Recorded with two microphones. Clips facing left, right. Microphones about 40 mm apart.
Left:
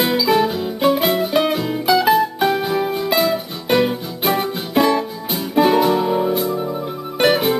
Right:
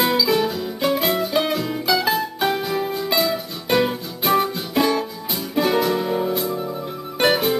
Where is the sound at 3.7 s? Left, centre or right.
Centre.